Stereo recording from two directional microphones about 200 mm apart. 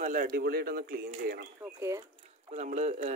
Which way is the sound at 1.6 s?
15° right (ahead or behind).